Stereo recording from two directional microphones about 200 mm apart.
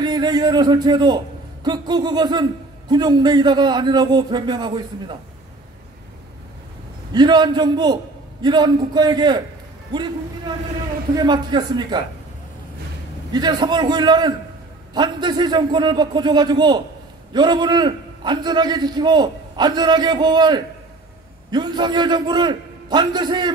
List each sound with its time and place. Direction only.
0.0 s a man's voice: 20° right (ahead or behind)
7.1 s a man's voice: 20° right (ahead or behind)
11.1 s a man's voice: 20° right (ahead or behind)
13.3 s a man's voice: 20° right (ahead or behind)